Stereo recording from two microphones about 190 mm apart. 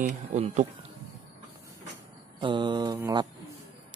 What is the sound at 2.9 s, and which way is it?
Speech, 15° right (ahead or behind).